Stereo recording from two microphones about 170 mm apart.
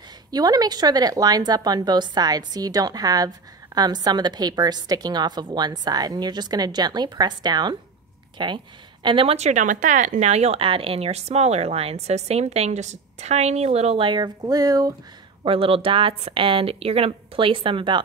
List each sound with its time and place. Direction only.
0.3 s speech: 25° right (ahead or behind)
15.4 s speech: 35° right (ahead or behind)